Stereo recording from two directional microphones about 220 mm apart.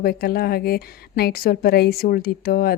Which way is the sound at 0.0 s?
45° left (ahead or behind).